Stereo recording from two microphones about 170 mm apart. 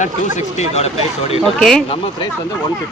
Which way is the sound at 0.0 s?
45° left (ahead or behind).